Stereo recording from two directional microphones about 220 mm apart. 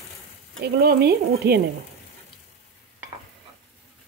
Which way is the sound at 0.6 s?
45° right (ahead or behind).